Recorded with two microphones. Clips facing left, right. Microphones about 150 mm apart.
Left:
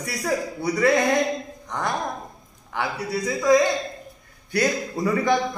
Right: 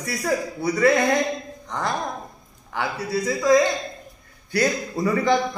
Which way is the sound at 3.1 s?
20° left (ahead or behind).